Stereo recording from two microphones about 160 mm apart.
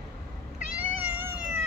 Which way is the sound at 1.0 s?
10° right (ahead or behind).